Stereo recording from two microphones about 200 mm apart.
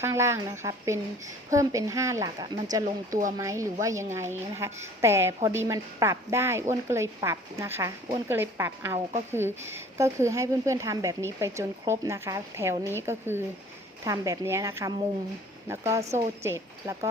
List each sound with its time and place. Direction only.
0.0 s a woman's voice: 15° right (ahead or behind)